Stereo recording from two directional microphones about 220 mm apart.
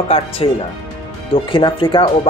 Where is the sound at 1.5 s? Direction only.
20° left (ahead or behind).